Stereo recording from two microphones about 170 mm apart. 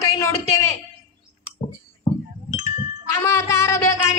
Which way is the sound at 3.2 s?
15° left (ahead or behind).